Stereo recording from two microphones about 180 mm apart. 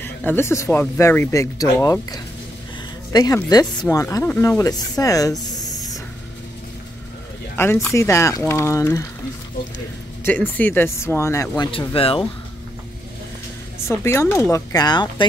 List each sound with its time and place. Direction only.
0.0 s speech: 10° left (ahead or behind)
7.5 s speech: 10° left (ahead or behind)
10.2 s speech: 10° left (ahead or behind); by 12.3 s 30° left (ahead or behind)
13.8 s speech: 15° left (ahead or behind)